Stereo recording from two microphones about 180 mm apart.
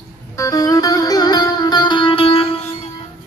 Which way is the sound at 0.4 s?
20° left (ahead or behind).